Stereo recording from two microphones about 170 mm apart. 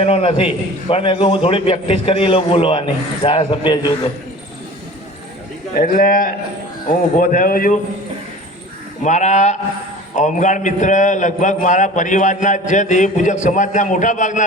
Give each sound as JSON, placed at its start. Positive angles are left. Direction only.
{"t": 0.0, "sound": "a man's voice", "side_deg": 35}
{"t": 5.8, "sound": "speech", "side_deg": 55}
{"t": 9.0, "sound": "a man's voice", "side_deg": 45}